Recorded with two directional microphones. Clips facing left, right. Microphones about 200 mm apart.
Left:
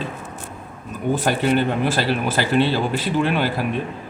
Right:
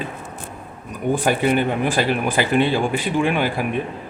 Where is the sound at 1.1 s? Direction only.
15° right (ahead or behind).